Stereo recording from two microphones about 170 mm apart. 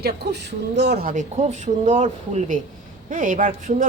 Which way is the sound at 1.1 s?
40° right (ahead or behind).